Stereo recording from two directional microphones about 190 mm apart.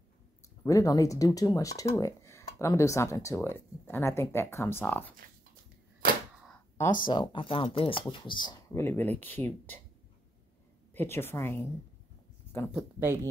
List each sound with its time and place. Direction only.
0.7 s speech: 15° left (ahead or behind)
6.8 s speech: 25° left (ahead or behind)
11.0 s speech: 10° left (ahead or behind)
12.7 s speech: 15° right (ahead or behind)